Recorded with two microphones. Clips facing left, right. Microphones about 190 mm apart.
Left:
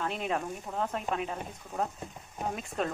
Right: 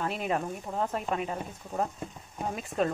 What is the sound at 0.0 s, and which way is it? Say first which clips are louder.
Speech: right 2 dB; 5° right (ahead or behind).